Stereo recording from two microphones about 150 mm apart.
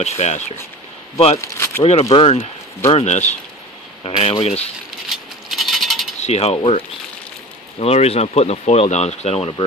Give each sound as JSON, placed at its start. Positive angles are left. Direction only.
{"t": 0.0, "sound": "speech", "side_deg": 50}
{"t": 1.4, "sound": "speech", "side_deg": 15}
{"t": 1.8, "sound": "speech", "side_deg": 40}
{"t": 5.1, "sound": "coin", "side_deg": 0}
{"t": 6.2, "sound": "speech", "side_deg": 45}
{"t": 7.8, "sound": "speech", "side_deg": 45}